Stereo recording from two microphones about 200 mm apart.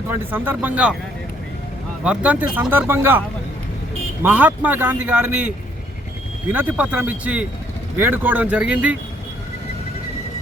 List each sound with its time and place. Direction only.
0.1 s a man's voice: 10° right (ahead or behind)
2.0 s a man's voice: 5° right (ahead or behind)